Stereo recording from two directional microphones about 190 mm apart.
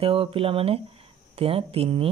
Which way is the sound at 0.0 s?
30° right (ahead or behind).